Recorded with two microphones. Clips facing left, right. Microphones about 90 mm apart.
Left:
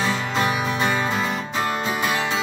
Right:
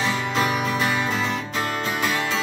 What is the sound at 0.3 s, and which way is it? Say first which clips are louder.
Music: even; centre (ahead or behind).